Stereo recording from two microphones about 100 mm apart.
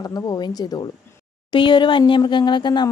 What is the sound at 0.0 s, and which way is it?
Speech, 40° left (ahead or behind).